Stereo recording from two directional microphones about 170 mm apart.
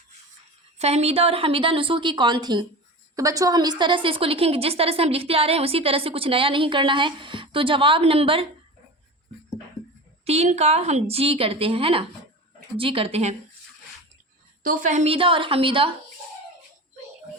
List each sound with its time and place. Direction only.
0.8 s a woman's voice: 40° right (ahead or behind)
10.2 s a woman's voice: 40° right (ahead or behind)
14.6 s a woman's voice: 55° right (ahead or behind); by 15.9 s 30° right (ahead or behind)